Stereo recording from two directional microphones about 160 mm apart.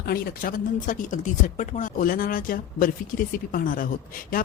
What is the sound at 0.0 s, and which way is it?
Speech, 65° left (ahead or behind).